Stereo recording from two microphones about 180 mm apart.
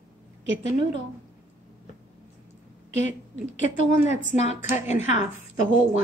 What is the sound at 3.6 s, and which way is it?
A woman's voice, 40° left (ahead or behind).